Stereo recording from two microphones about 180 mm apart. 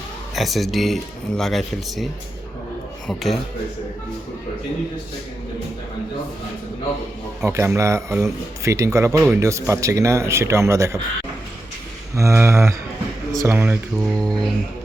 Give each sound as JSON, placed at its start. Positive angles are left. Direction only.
{"t": 0.3, "sound": "speech", "side_deg": 0}
{"t": 3.1, "sound": "speech", "side_deg": 0}
{"t": 7.4, "sound": "speech", "side_deg": -15}
{"t": 12.1, "sound": "speech", "side_deg": -15}
{"t": 14.0, "sound": "speech", "side_deg": 5}